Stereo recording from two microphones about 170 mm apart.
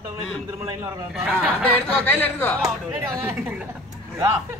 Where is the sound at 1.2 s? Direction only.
Centre (ahead or behind).